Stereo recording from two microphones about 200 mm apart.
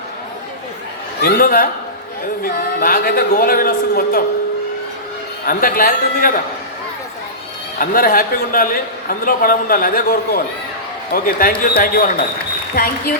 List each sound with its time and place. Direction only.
1.2 s a man's voice: 45° left (ahead or behind)
5.5 s a man's voice: 45° left (ahead or behind)
7.8 s a man's voice: 45° left (ahead or behind)